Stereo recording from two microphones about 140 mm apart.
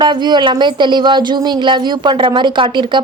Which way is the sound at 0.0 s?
30° right (ahead or behind).